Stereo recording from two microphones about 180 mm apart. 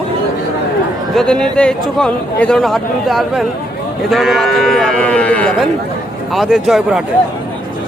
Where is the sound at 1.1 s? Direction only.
5° left (ahead or behind).